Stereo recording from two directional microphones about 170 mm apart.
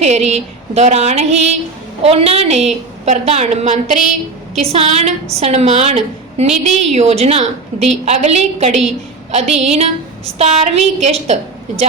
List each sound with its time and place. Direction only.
0.0 s a woman's voice: 40° right (ahead or behind)